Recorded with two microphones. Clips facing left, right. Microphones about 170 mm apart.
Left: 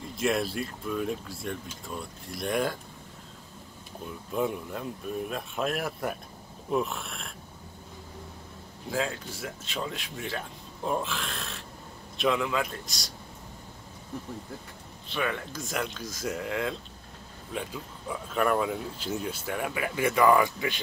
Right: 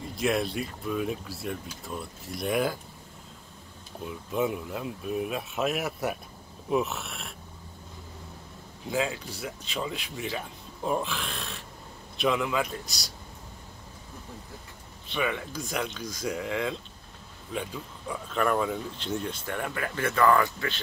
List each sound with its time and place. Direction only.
0.0 s speech: centre (ahead or behind)
4.3 s speech: 5° right (ahead or behind)
8.9 s speech: 5° right (ahead or behind)
15.1 s speech: centre (ahead or behind)